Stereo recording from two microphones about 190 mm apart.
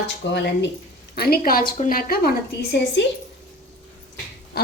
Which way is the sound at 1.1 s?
55° left (ahead or behind).